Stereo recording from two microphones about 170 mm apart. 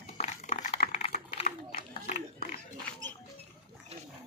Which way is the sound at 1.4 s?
55° left (ahead or behind).